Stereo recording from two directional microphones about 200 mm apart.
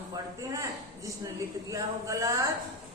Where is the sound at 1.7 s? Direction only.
15° right (ahead or behind).